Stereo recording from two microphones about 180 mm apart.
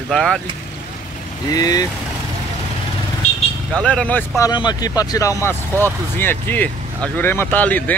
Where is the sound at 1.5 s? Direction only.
20° left (ahead or behind).